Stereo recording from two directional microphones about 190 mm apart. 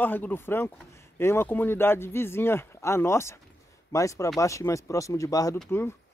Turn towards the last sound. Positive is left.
turn(degrees=10)  # may be behind; listen again after turning